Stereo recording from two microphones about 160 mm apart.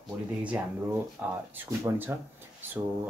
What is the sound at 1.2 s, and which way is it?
Speech, 10° right (ahead or behind).